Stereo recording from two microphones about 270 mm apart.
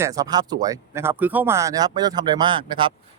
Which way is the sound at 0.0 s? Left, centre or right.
Centre.